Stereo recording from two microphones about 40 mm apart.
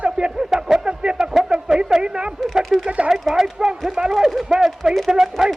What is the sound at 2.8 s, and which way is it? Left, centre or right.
Radio, right.